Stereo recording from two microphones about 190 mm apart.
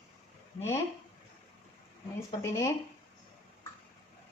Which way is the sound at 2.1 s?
15° left (ahead or behind).